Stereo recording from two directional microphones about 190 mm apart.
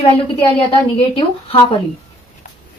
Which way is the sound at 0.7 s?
30° left (ahead or behind).